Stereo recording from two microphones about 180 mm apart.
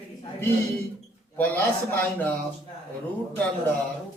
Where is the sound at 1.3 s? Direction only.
10° left (ahead or behind).